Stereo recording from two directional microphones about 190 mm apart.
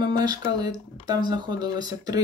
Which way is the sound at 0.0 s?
20° right (ahead or behind).